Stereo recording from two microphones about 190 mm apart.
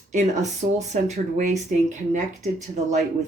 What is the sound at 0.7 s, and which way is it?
Speech, 35° right (ahead or behind).